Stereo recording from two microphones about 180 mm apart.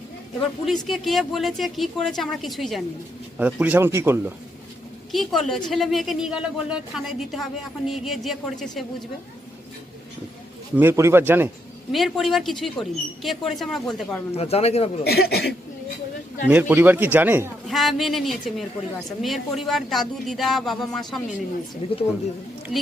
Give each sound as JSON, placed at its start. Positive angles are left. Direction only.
{"t": 0.6, "sound": "a woman's voice", "side_deg": 0}
{"t": 5.1, "sound": "a woman's voice", "side_deg": 0}
{"t": 10.8, "sound": "speech", "side_deg": -15}
{"t": 11.9, "sound": "a woman's voice", "side_deg": 0}
{"t": 14.3, "sound": "speech", "side_deg": 35}
{"t": 15.0, "sound": "speech", "side_deg": 60}
{"t": 16.5, "sound": "speech", "side_deg": -10}
{"t": 17.7, "sound": "a woman's voice", "side_deg": 0}
{"t": 21.8, "sound": "speech", "side_deg": 30}
{"t": 22.7, "sound": "speech", "side_deg": 0}